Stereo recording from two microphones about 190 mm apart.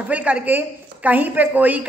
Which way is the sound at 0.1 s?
5° right (ahead or behind).